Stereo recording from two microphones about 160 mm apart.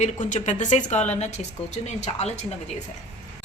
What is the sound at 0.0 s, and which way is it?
A woman's voice, 50° left (ahead or behind).